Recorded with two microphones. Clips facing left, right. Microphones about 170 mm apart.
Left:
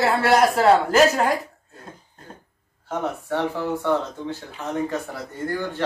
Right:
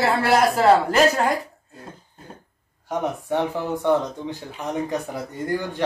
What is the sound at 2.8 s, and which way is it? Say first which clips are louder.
Speech: right 2 dB; 15° right (ahead or behind).